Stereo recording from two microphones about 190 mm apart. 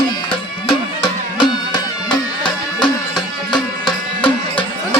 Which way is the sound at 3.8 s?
25° left (ahead or behind).